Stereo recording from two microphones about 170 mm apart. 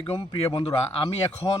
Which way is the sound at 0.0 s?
25° left (ahead or behind).